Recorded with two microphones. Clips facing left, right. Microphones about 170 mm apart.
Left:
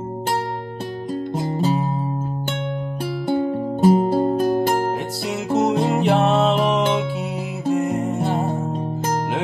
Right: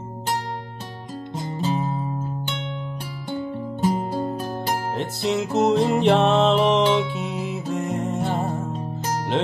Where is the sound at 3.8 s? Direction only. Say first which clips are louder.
Left 8 dB; 35° left (ahead or behind).